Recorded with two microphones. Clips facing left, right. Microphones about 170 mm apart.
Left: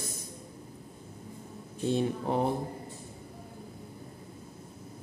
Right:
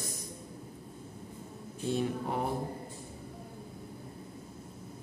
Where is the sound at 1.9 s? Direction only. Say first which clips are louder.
Left 3 dB; 25° left (ahead or behind).